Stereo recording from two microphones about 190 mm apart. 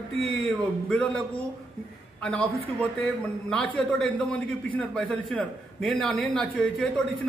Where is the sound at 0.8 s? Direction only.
5° left (ahead or behind).